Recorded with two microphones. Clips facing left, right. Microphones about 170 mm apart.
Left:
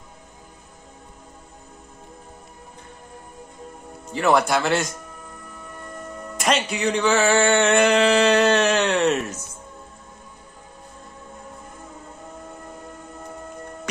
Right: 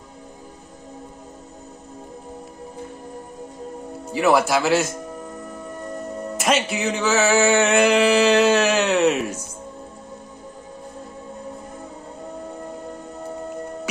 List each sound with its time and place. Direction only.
4.1 s speech: 5° right (ahead or behind)
5.5 s music: 35° right (ahead or behind)
6.3 s music: 5° right (ahead or behind)